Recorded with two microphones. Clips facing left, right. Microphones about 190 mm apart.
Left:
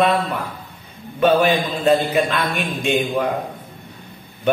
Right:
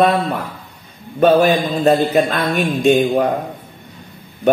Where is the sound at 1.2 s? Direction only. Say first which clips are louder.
Right 4 dB; 40° right (ahead or behind).